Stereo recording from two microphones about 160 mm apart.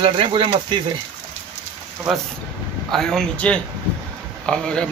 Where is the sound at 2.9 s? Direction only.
Centre (ahead or behind).